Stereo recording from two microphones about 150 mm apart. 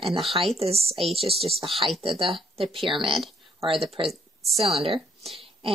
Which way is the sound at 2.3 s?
40° right (ahead or behind).